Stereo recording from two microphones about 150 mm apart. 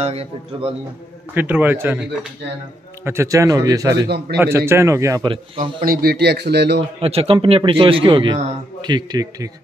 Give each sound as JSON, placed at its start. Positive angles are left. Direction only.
{"t": 0.0, "sound": "speech", "side_deg": -40}
{"t": 1.3, "sound": "a man's voice", "side_deg": -10}
{"t": 5.3, "sound": "speech", "side_deg": -35}
{"t": 5.9, "sound": "speech", "side_deg": -85}
{"t": 7.0, "sound": "a man's voice", "side_deg": -40}